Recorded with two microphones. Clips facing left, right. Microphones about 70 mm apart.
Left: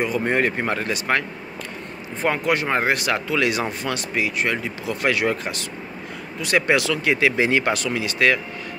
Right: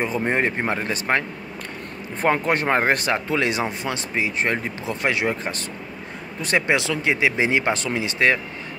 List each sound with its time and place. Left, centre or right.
0.0 s speech: right
2.2 s speech: right